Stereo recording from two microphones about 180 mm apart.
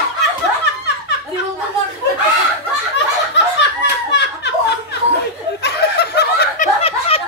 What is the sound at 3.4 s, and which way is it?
Snicker, 75° left (ahead or behind).